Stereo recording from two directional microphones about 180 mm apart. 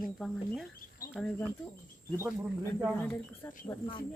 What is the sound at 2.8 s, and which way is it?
Speech, 10° left (ahead or behind).